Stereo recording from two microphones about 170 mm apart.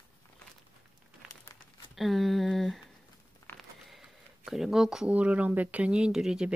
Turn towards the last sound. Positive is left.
turn(degrees=-5)  # may be behind; listen again after turning